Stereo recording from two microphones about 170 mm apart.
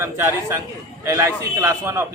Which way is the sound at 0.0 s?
15° right (ahead or behind).